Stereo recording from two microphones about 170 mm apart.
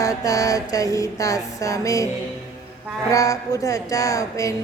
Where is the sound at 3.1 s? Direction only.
20° left (ahead or behind).